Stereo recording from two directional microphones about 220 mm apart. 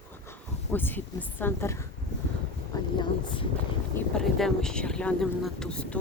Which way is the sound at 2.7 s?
15° left (ahead or behind).